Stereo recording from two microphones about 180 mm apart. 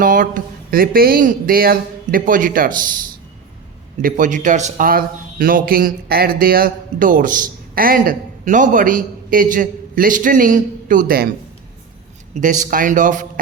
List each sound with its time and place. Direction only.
0.0 s speech: 50° right (ahead or behind)
4.0 s speech: 45° right (ahead or behind)
12.3 s speech: 45° right (ahead or behind)